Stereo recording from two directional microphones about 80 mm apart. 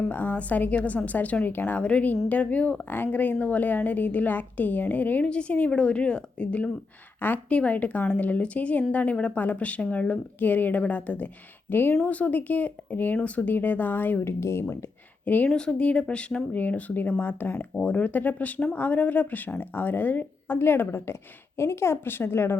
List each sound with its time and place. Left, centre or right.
0.0 s speech: left
15.4 s speech: centre; by 22.5 s left